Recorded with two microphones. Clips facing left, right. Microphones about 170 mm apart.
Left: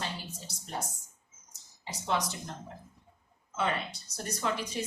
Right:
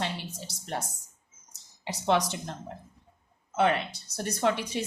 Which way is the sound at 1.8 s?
75° right (ahead or behind).